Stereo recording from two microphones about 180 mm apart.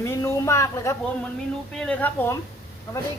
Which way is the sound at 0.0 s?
15° left (ahead or behind).